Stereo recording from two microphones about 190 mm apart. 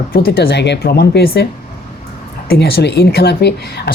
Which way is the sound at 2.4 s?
55° left (ahead or behind).